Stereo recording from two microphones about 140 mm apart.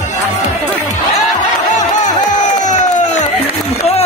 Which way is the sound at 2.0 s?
60° left (ahead or behind).